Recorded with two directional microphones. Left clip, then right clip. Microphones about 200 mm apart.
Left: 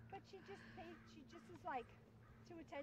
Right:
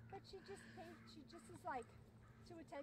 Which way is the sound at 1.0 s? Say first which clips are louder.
Right 1 dB; 30° right (ahead or behind).